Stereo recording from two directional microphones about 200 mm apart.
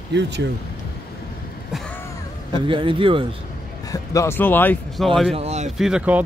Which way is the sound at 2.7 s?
25° right (ahead or behind).